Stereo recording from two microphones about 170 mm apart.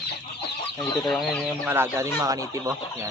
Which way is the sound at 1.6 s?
15° right (ahead or behind).